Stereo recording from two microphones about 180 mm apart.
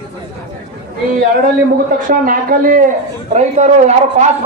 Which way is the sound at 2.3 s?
50° right (ahead or behind).